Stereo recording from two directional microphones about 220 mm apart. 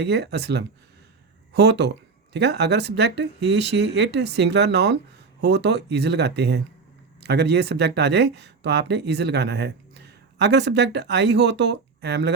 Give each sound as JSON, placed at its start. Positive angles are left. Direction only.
{"t": 0.0, "sound": "speech", "side_deg": -50}